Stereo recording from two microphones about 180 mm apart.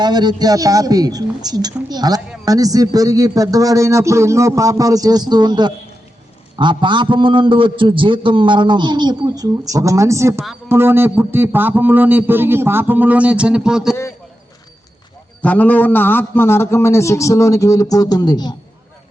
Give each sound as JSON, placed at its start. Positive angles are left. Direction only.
{"t": 0.0, "sound": "a woman's voice", "side_deg": -25}
{"t": 15.4, "sound": "a man's voice", "side_deg": 10}